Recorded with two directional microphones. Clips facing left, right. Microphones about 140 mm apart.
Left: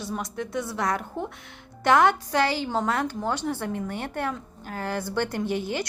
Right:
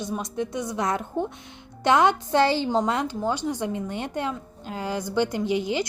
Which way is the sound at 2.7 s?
15° right (ahead or behind).